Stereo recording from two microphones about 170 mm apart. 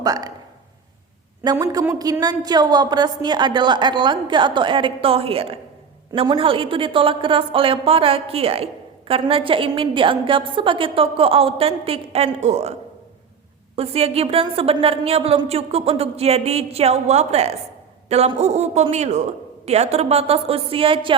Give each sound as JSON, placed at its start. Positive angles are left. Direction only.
{"t": 0.0, "sound": "a woman's voice", "side_deg": -25}
{"t": 1.5, "sound": "a woman's voice", "side_deg": -20}
{"t": 13.7, "sound": "a woman's voice", "side_deg": -35}